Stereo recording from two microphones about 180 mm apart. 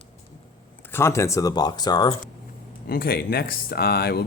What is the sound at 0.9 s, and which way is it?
Speech, 15° left (ahead or behind).